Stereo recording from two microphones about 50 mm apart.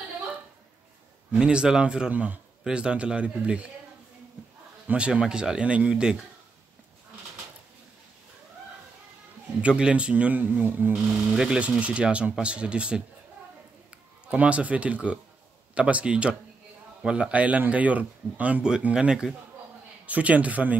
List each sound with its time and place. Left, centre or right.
1.3 s speech: centre
2.6 s speech: centre
4.9 s speech: right
9.6 s speech: centre
11.3 s speech: centre
11.6 s a man's voice: right
18.9 s speech: centre
20.1 s speech: right